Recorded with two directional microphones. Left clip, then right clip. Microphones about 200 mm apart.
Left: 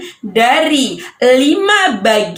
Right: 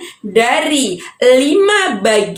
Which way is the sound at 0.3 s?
30° right (ahead or behind).